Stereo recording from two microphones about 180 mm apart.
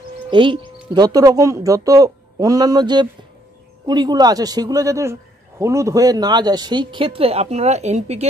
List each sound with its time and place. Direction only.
0.3 s speech: 25° right (ahead or behind)